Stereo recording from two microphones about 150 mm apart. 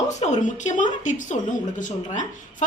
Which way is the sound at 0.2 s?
55° left (ahead or behind).